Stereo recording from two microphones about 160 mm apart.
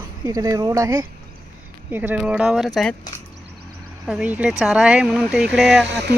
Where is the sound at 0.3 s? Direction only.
20° right (ahead or behind).